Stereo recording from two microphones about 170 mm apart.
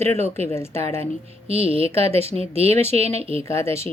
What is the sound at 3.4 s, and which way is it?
Speech, 15° left (ahead or behind).